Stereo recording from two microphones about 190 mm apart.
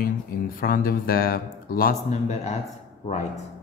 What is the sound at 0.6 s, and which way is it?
Speech, 50° left (ahead or behind).